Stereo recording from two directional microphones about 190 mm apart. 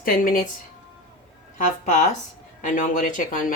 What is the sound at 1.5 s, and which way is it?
Speech, 40° left (ahead or behind).